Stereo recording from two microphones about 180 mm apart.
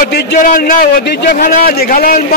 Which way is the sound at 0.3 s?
50° left (ahead or behind).